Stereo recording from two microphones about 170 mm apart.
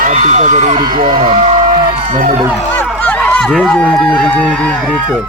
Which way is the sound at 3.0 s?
10° left (ahead or behind).